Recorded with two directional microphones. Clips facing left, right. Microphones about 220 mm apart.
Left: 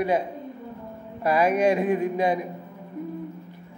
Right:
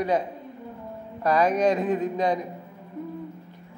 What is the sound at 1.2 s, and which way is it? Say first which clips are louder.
A man's voice: left 1 dB; 10° left (ahead or behind).